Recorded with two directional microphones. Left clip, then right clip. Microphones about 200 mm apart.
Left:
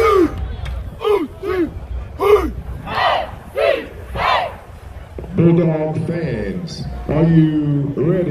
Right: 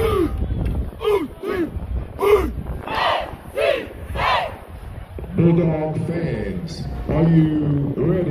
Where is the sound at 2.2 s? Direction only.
20° right (ahead or behind).